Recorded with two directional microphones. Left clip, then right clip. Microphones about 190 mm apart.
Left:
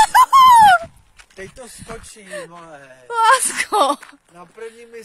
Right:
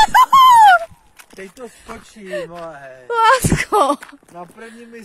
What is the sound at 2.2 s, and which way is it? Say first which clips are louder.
Speech: right 10 dB; 10° right (ahead or behind).